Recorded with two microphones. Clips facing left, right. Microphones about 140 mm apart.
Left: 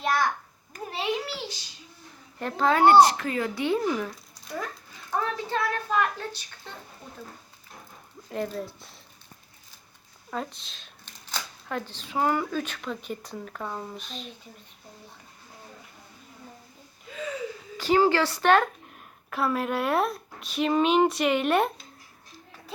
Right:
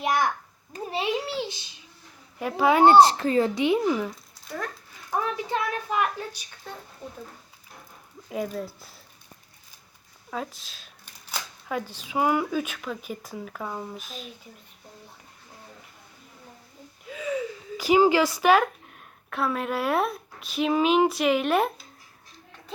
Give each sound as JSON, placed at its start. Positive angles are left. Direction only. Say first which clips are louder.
{"t": 0.0, "sound": "a sound", "louder": "right 1 dB", "side_deg": -15}
{"t": 0.7, "sound": "speech", "louder": "right 2 dB", "side_deg": -25}
{"t": 2.4, "sound": "speech", "louder": "right 2 dB", "side_deg": -10}
{"t": 3.5, "sound": "speech", "louder": "right 3 dB", "side_deg": -15}
{"t": 5.1, "sound": "speech", "louder": "right 1 dB", "side_deg": -15}
{"t": 8.3, "sound": "speech", "louder": "right 1 dB", "side_deg": -5}
{"t": 10.2, "sound": "speech", "louder": "even", "side_deg": 0}
{"t": 17.1, "sound": "a sound", "louder": "right 1 dB", "side_deg": -5}
{"t": 17.7, "sound": "a woman's voice", "louder": "right 2 dB", "side_deg": -10}